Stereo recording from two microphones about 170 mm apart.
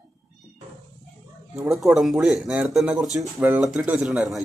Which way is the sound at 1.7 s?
Centre (ahead or behind).